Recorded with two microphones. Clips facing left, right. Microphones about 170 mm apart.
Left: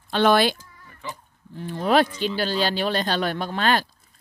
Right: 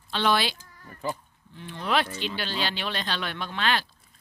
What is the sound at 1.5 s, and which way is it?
Speech, 40° left (ahead or behind).